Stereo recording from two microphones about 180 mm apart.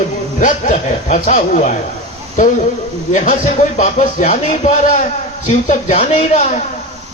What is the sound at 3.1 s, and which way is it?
A man's voice, 45° left (ahead or behind).